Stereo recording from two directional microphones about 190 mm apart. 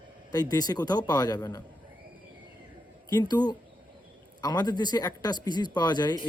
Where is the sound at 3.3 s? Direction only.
20° left (ahead or behind).